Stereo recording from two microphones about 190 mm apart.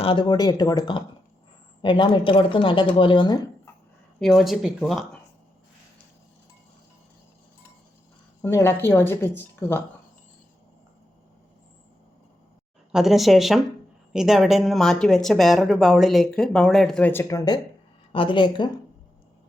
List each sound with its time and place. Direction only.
0.0 s a woman's voice: 25° left (ahead or behind)
4.2 s speech: centre (ahead or behind)
8.4 s speech: 15° left (ahead or behind)
12.9 s a woman's voice: centre (ahead or behind); by 18.7 s 25° left (ahead or behind)